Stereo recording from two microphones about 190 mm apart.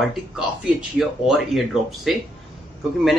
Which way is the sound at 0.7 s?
Centre (ahead or behind).